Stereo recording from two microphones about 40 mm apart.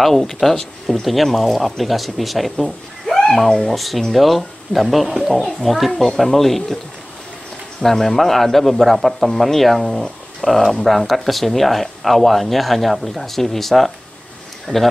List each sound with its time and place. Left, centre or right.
0.0 s speech: centre
3.4 s speech: centre
3.7 s speech: centre
7.8 s speech: centre
14.7 s speech: centre